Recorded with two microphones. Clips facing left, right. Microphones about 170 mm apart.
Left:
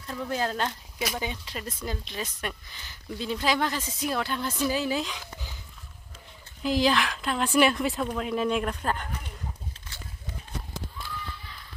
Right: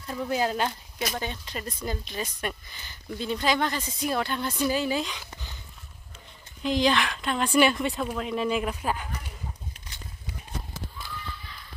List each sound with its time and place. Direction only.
0.0 s speech: 10° right (ahead or behind)
0.9 s speech: 5° left (ahead or behind)
6.6 s speech: 5° left (ahead or behind)